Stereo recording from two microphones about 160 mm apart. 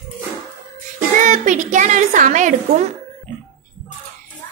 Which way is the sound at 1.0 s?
55° right (ahead or behind).